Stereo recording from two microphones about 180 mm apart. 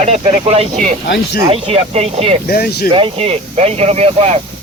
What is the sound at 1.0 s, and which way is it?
Speech, 65° left (ahead or behind).